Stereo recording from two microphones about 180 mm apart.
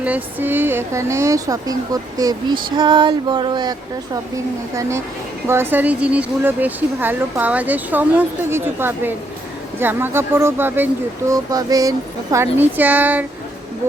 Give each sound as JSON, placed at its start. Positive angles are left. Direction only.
{"t": 0.0, "sound": "a woman's voice", "side_deg": -10}
{"t": 2.7, "sound": "a sound", "side_deg": -25}
{"t": 4.7, "sound": "a woman's voice", "side_deg": -15}